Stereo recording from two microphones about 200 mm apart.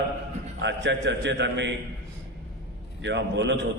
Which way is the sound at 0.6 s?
60° right (ahead or behind).